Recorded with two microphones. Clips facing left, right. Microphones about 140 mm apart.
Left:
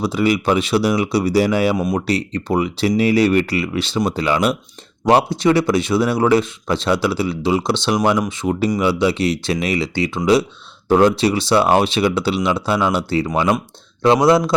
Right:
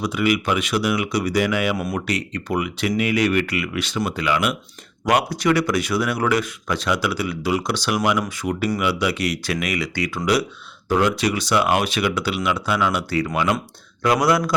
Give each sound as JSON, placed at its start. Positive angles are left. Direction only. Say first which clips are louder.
{"t": 0.0, "sound": "speech", "louder": "left 4 dB", "side_deg": 30}
{"t": 1.7, "sound": "speech", "louder": "left 6 dB", "side_deg": 20}
{"t": 2.0, "sound": "speech", "louder": "left 5 dB", "side_deg": 30}